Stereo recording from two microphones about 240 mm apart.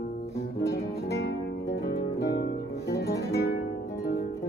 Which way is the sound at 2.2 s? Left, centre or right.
Left.